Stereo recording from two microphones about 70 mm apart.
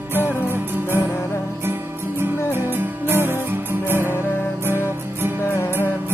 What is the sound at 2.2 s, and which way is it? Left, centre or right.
Music, right.